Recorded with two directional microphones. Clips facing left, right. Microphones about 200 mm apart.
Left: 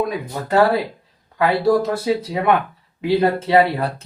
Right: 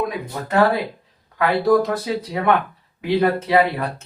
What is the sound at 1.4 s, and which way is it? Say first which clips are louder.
Speech: even; 25° left (ahead or behind).